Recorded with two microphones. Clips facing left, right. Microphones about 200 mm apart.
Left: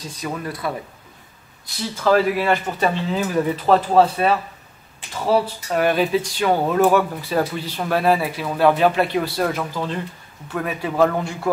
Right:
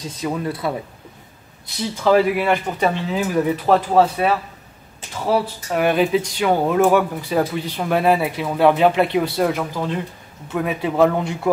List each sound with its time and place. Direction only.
0.1 s a man's voice: 20° right (ahead or behind)
2.0 s a man's voice: 15° right (ahead or behind)